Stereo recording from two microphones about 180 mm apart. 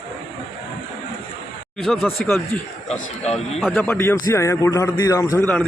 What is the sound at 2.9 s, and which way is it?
Speech, 35° left (ahead or behind).